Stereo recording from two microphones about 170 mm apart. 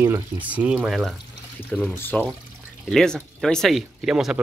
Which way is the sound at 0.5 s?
10° right (ahead or behind).